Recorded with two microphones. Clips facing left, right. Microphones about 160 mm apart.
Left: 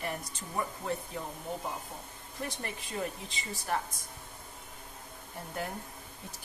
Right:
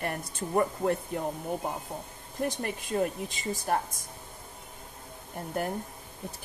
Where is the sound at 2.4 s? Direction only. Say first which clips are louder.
Right 7 dB; 45° right (ahead or behind).